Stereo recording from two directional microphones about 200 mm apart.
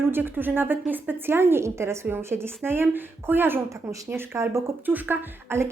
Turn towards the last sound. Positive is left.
turn(degrees=-10)  # may be behind; listen again after turning